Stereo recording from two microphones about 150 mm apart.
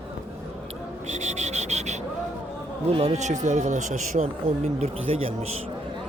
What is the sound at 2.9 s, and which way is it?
Speech, 40° right (ahead or behind).